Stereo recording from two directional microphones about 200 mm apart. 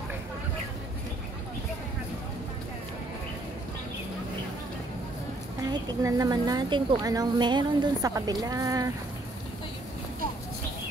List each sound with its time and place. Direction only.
5.6 s a woman's voice: 15° right (ahead or behind)